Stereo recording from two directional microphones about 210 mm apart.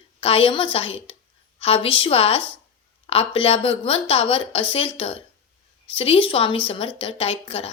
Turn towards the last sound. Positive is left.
turn(degrees=25)  # may be behind; listen again after turning